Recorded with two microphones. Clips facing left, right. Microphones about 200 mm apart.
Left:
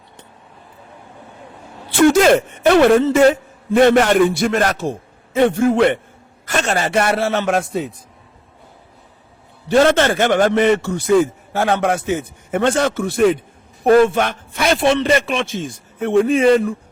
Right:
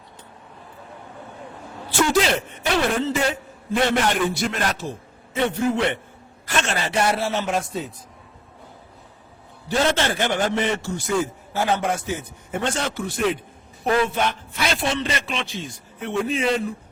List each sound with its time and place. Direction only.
2.0 s a man's voice: 50° left (ahead or behind)
9.7 s a man's voice: 55° left (ahead or behind)